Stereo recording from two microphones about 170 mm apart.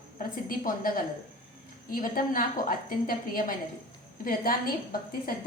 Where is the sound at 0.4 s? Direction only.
55° left (ahead or behind).